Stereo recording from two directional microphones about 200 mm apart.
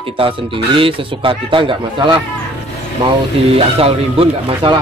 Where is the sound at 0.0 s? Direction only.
25° right (ahead or behind).